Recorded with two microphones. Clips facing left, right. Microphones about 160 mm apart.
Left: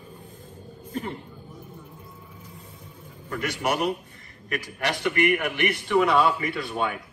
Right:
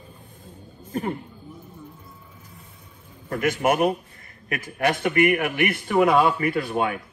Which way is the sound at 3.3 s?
50° right (ahead or behind).